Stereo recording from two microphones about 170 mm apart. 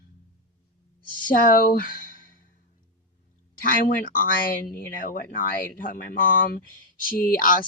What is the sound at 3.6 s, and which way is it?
Speech, 55° left (ahead or behind).